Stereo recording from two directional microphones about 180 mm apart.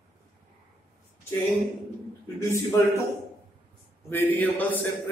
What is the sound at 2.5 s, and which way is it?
Speech, 15° left (ahead or behind).